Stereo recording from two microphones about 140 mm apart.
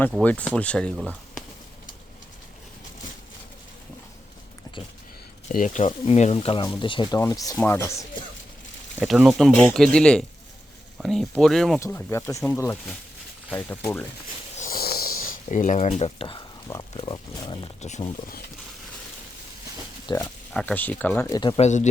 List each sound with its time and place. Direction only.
0.2 s speech: 10° left (ahead or behind)
5.5 s speech: 65° left (ahead or behind)
6.3 s speech: 40° left (ahead or behind)
7.2 s speech: 20° left (ahead or behind)
9.0 s speech: 5° right (ahead or behind)
11.9 s speech: 15° left (ahead or behind)
14.5 s a sound: 75° left (ahead or behind); by 16.4 s 40° left (ahead or behind)
17.0 s speech: 30° left (ahead or behind)
17.7 s speech: 55° left (ahead or behind)
20.1 s speech: 30° left (ahead or behind)
20.5 s speech: 5° left (ahead or behind)
21.2 s speech: 30° left (ahead or behind)
21.6 s speech: 60° left (ahead or behind)